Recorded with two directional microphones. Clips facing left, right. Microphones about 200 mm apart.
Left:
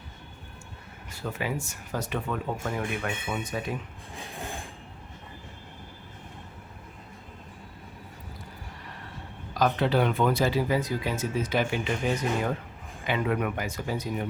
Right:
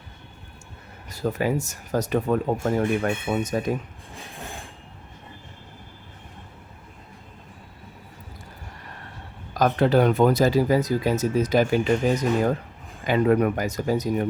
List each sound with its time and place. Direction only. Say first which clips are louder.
1.1 s speech: right 8 dB; 40° right (ahead or behind)
9.6 s speech: right 5 dB; 45° right (ahead or behind)